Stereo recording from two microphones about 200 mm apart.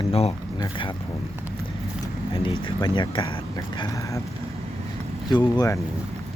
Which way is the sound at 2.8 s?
25° left (ahead or behind).